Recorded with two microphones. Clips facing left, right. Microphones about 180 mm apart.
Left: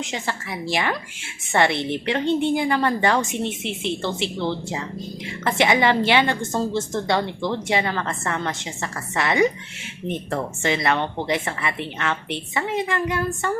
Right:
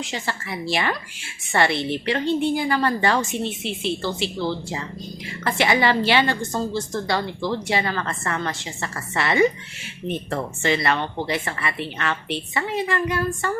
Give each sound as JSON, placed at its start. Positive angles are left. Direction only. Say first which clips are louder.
{"t": 0.0, "sound": "a woman's voice", "louder": "left 1 dB", "side_deg": 20}
{"t": 9.1, "sound": "a woman's voice", "louder": "right 1 dB", "side_deg": 15}
{"t": 10.6, "sound": "a woman's voice", "louder": "even", "side_deg": 20}